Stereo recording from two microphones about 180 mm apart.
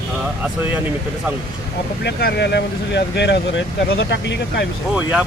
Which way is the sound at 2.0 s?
65° left (ahead or behind).